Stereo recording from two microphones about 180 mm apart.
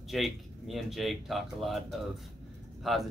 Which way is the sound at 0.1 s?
Centre (ahead or behind).